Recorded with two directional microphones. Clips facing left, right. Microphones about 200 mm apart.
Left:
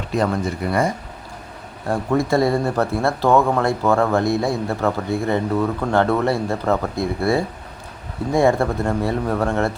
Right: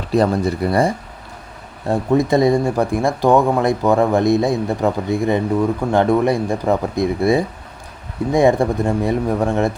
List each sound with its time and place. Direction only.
0.1 s speech: 35° right (ahead or behind)
1.9 s speech: 20° right (ahead or behind)